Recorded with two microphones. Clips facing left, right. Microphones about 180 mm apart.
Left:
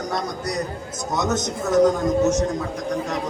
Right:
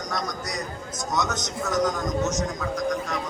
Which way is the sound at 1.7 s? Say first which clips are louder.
Left 8 dB; 30° left (ahead or behind).